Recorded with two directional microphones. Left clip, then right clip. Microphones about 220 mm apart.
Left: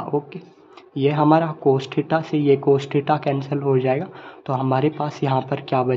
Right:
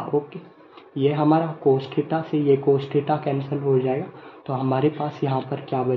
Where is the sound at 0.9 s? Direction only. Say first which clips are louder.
Left 3 dB; 10° left (ahead or behind).